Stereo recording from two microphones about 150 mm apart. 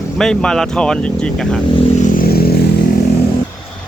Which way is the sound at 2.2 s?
90° left.